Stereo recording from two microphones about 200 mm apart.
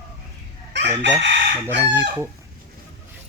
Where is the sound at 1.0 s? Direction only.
60° right (ahead or behind).